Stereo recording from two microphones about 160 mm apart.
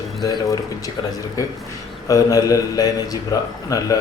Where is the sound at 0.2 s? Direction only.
20° left (ahead or behind).